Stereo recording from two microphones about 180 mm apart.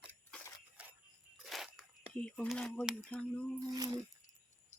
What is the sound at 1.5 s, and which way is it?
Biting, centre (ahead or behind).